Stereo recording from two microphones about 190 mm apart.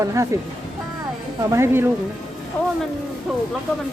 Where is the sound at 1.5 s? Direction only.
10° right (ahead or behind).